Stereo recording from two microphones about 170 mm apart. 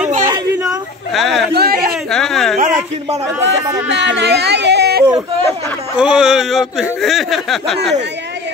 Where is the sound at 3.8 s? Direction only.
90° right.